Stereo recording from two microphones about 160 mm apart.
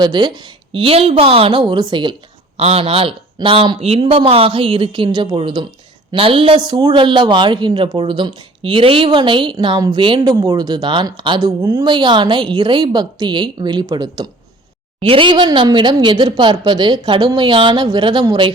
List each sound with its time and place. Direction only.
0.0 s a woman's voice: 30° right (ahead or behind)
10.3 s speech: 20° right (ahead or behind)